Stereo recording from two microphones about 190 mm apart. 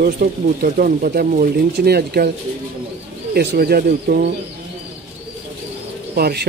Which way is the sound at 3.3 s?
60° right (ahead or behind).